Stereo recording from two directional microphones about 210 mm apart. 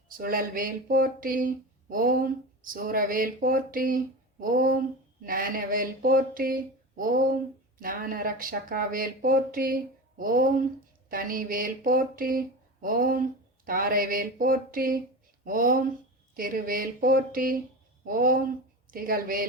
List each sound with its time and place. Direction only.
0.1 s speech: 45° right (ahead or behind)